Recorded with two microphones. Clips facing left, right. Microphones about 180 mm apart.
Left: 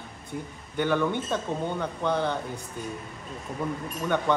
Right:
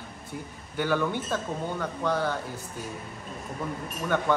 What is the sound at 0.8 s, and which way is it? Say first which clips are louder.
A man's voice: left 2 dB; 5° right (ahead or behind).